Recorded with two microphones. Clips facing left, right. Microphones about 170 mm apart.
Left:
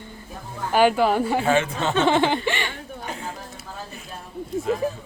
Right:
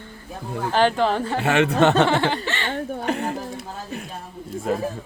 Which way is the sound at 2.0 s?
20° left (ahead or behind).